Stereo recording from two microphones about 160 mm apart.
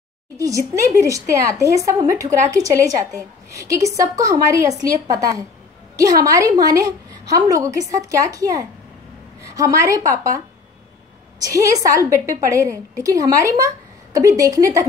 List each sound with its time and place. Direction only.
0.4 s a woman's voice: 20° right (ahead or behind)
11.4 s a woman's voice: 20° right (ahead or behind)